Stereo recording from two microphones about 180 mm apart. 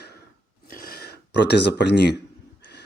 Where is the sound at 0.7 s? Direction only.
55° left (ahead or behind).